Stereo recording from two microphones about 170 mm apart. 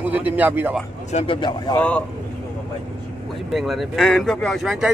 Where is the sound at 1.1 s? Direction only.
30° left (ahead or behind).